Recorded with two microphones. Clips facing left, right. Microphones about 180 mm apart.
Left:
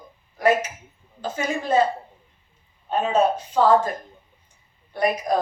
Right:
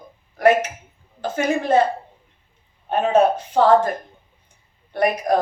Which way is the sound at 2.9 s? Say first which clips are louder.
Right 4 dB; 60° right (ahead or behind).